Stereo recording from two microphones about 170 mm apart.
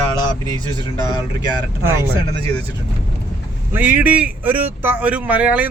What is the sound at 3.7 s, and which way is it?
Speech, 10° right (ahead or behind).